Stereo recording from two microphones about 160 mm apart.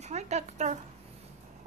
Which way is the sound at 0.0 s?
45° right (ahead or behind).